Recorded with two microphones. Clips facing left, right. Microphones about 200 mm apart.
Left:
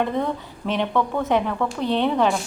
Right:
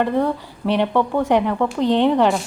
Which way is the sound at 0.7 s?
15° right (ahead or behind).